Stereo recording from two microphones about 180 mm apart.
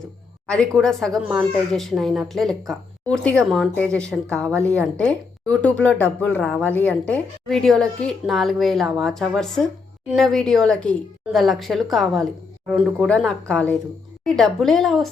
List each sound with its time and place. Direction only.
0.4 s speech: 5° left (ahead or behind)